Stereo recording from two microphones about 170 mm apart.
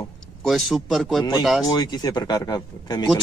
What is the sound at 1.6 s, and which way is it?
Speech, 25° left (ahead or behind).